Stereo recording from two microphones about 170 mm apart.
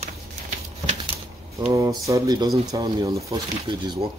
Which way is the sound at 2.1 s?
20° right (ahead or behind).